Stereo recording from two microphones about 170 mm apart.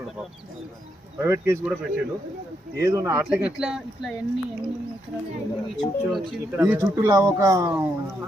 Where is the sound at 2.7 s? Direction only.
20° right (ahead or behind).